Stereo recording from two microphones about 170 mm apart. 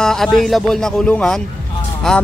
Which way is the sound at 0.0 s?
Centre (ahead or behind).